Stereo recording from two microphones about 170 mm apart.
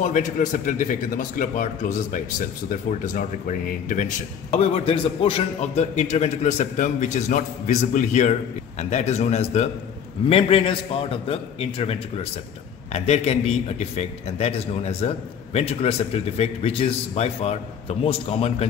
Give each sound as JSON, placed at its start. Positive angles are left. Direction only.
{"t": 0.0, "sound": "a man's voice", "side_deg": 45}